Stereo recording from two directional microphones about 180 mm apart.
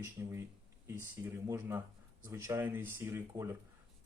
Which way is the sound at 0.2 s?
15° right (ahead or behind).